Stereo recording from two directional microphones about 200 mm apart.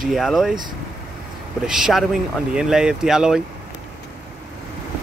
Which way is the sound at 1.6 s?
Centre (ahead or behind).